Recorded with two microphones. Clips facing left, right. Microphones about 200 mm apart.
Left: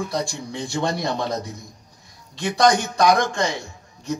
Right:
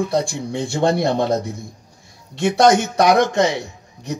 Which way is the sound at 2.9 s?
65° right (ahead or behind).